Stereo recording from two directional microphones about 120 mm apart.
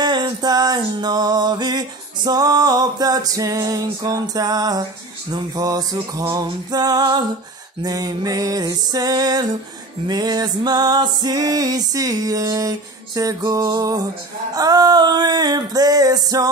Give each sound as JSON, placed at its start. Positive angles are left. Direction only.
{"t": 0.0, "sound": "music", "side_deg": -35}